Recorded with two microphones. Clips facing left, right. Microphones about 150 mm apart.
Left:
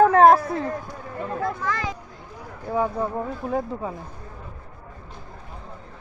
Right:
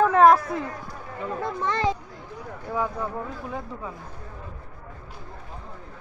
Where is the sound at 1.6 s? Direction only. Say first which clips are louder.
Right 3 dB; 30° right (ahead or behind).